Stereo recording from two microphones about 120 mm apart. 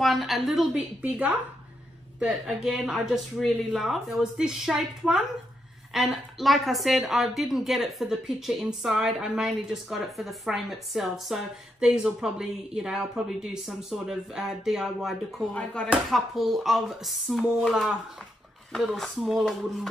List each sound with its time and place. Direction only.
0.0 s a woman's voice: centre (ahead or behind)
1.0 s a woman's voice: 10° right (ahead or behind)
15.5 s a woman's voice: 10° left (ahead or behind)